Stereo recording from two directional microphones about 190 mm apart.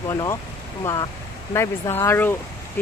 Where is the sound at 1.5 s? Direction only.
15° left (ahead or behind).